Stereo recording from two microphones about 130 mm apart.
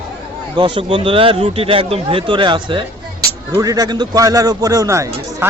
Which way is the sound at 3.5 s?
25° right (ahead or behind).